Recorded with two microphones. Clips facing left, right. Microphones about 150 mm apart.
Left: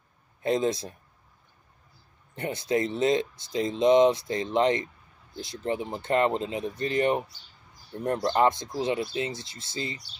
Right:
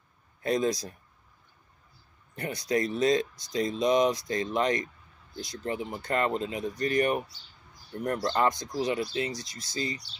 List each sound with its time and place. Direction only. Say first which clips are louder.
0.4 s speech: left 2 dB; 25° left (ahead or behind)
2.3 s speech: left 2 dB; 25° left (ahead or behind)